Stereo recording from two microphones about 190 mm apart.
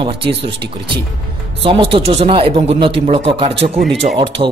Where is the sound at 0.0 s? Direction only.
25° right (ahead or behind).